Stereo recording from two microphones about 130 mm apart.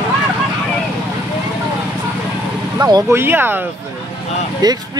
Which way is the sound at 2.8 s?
30° right (ahead or behind).